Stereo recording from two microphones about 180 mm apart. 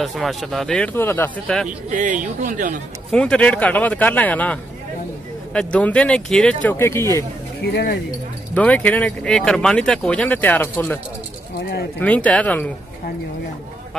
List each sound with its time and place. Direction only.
0.0 s speech: centre (ahead or behind)
1.9 s speech: 45° right (ahead or behind)
3.1 s speech: 5° left (ahead or behind)
7.6 s speech: 65° left (ahead or behind)
8.5 s speech: 10° left (ahead or behind)
12.0 s speech: 10° left (ahead or behind)